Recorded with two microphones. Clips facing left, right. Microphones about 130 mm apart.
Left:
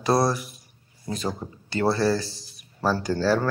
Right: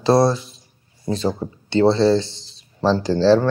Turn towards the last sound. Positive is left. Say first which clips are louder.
# right 8 dB
turn(degrees=-30)  # may be behind; listen again after turning